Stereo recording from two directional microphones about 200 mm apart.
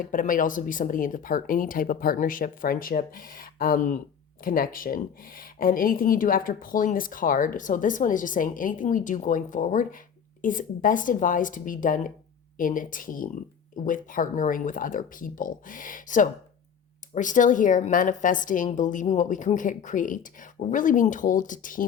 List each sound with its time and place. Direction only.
0.0 s a woman's voice: 40° left (ahead or behind)